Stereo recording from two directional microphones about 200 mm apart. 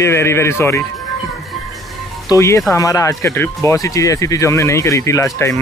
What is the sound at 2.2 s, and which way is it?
Speech, 15° left (ahead or behind).